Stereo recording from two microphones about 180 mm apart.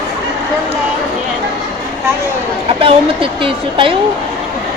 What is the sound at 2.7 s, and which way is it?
Speech, 30° right (ahead or behind).